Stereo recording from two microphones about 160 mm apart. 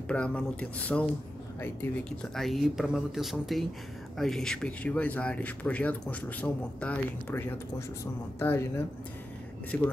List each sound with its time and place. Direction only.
0.1 s speech: 5° left (ahead or behind)